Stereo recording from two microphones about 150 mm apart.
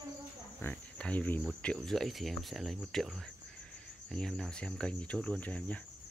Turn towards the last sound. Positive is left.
turn(degrees=10)  # may be behind; listen again after turning